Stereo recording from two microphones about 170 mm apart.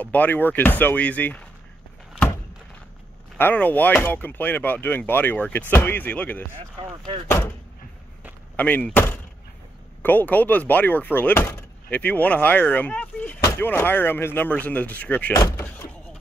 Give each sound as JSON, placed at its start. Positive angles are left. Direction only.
{"t": 0.0, "sound": "speech", "side_deg": 10}
{"t": 3.3, "sound": "speech", "side_deg": 10}
{"t": 8.5, "sound": "speech", "side_deg": 10}